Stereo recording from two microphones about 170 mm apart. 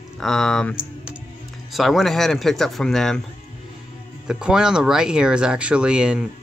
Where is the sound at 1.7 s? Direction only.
Centre (ahead or behind).